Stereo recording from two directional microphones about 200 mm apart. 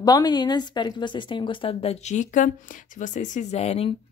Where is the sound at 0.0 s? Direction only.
20° left (ahead or behind).